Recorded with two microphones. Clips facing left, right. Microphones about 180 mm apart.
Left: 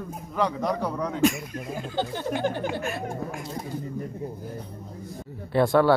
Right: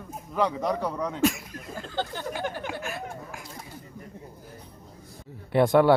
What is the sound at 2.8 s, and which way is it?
Speech, centre (ahead or behind).